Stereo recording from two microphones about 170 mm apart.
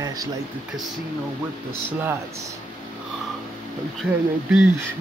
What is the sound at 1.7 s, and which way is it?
Speech, 15° right (ahead or behind).